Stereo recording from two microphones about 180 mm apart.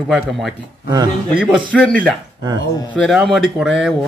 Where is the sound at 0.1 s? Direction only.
Centre (ahead or behind).